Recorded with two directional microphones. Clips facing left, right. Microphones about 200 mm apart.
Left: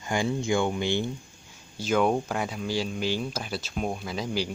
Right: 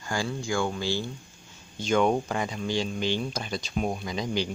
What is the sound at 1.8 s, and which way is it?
Speech, 5° left (ahead or behind).